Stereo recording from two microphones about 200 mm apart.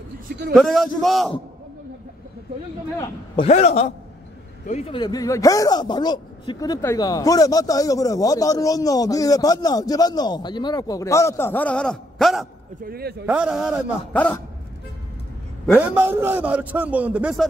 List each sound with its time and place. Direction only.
0.3 s a man's voice: 45° right (ahead or behind)
0.6 s a man's voice: centre (ahead or behind)
3.4 s a man's voice: 35° left (ahead or behind); by 12.4 s centre (ahead or behind)
12.8 s a man's voice: 50° right (ahead or behind)
13.2 s a man's voice: 5° right (ahead or behind)
14.1 s speech: 5° left (ahead or behind)
15.8 s a man's voice: 10° right (ahead or behind)